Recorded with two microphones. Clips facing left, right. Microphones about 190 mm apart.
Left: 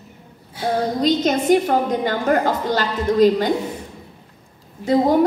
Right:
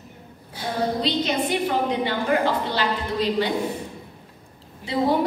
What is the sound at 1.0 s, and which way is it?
A woman's voice, 45° left (ahead or behind).